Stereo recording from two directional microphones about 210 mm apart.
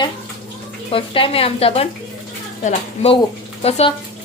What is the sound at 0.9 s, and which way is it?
Speech, 25° left (ahead or behind).